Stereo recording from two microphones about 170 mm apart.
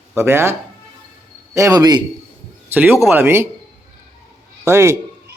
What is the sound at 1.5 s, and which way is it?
Speech, 20° right (ahead or behind).